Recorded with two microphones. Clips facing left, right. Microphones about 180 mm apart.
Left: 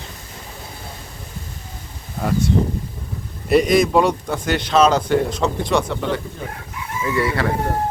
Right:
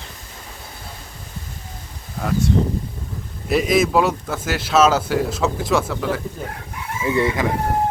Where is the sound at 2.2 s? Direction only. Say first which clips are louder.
Left 2 dB; centre (ahead or behind).